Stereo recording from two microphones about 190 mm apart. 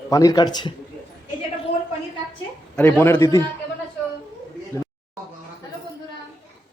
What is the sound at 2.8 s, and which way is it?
Speech, 10° left (ahead or behind).